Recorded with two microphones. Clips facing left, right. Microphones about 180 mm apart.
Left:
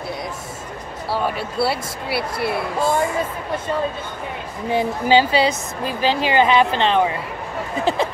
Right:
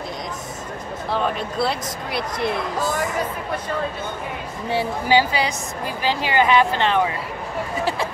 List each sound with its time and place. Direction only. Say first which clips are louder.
1.1 s speech: left 1 dB; 5° left (ahead or behind)
2.8 s speech: left 7 dB; 25° left (ahead or behind)
4.6 s speech: left 3 dB; 20° left (ahead or behind)